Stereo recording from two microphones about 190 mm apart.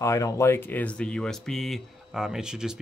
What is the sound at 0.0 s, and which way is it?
Speech, 15° left (ahead or behind).